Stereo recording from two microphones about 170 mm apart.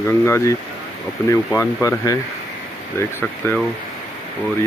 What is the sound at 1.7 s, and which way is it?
Speech, 20° left (ahead or behind).